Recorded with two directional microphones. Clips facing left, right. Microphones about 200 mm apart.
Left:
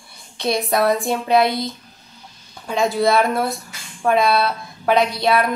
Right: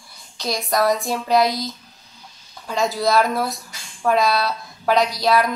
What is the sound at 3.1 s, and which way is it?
A woman's voice, centre (ahead or behind).